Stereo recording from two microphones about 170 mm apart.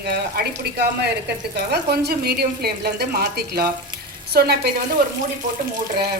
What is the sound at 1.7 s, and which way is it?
A woman's voice, 70° right (ahead or behind).